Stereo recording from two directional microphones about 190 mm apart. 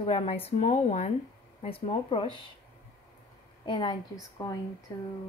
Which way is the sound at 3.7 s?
25° left (ahead or behind).